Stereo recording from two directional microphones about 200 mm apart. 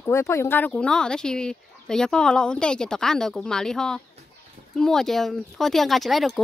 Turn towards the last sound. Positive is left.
turn(degrees=0)  # may be behind; listen again after turning